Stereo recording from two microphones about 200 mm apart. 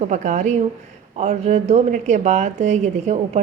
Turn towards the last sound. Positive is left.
turn(degrees=-35)  # may be behind; listen again after turning